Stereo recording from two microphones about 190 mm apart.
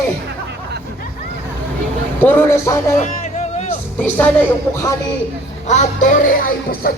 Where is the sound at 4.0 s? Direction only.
10° left (ahead or behind).